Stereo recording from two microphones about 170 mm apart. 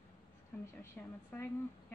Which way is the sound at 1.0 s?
10° left (ahead or behind).